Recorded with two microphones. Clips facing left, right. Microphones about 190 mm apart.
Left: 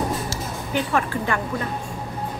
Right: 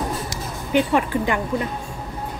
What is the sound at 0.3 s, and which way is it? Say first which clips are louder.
Music: right 4 dB; 15° right (ahead or behind).